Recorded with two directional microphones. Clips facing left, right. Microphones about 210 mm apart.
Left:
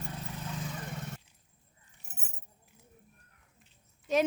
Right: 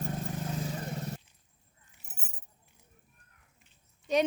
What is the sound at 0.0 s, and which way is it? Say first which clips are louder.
Vehicle: right 6 dB; 50° right (ahead or behind).